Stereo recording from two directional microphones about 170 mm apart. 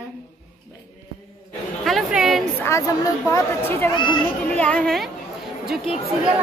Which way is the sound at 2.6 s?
20° left (ahead or behind).